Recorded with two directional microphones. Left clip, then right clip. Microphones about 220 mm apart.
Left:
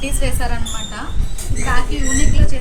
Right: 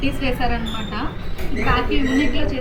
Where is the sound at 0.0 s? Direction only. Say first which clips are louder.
Right 2 dB; 35° left (ahead or behind).